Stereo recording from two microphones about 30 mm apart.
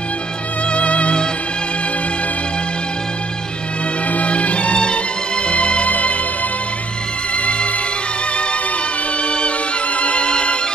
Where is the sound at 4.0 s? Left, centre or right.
Left.